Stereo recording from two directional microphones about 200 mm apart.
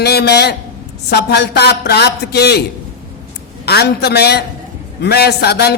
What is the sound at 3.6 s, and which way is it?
Speech, 55° left (ahead or behind).